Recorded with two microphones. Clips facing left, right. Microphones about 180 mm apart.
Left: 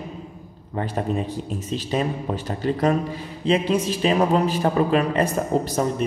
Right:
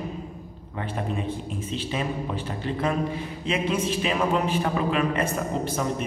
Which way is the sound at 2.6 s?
40° left (ahead or behind).